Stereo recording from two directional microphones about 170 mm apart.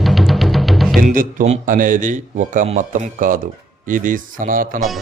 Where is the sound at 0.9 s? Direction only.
55° right (ahead or behind).